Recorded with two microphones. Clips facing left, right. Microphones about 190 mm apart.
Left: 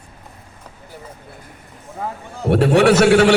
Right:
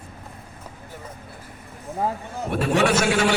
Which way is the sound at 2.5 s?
70° left (ahead or behind).